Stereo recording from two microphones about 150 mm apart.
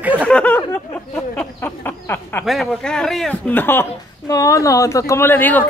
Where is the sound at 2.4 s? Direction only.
5° left (ahead or behind).